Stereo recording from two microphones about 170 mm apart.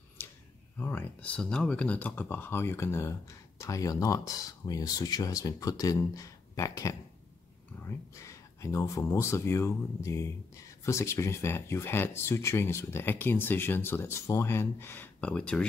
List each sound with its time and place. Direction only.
0.7 s speech: 10° left (ahead or behind)